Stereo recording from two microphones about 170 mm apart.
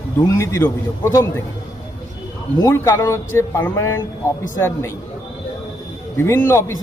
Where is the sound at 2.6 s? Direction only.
15° left (ahead or behind).